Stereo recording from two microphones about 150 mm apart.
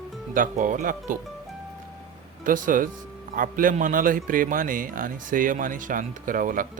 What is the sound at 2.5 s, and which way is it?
Speech, 65° right (ahead or behind).